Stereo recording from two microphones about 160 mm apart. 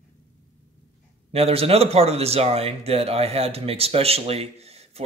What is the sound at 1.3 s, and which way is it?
A man's voice, 40° right (ahead or behind).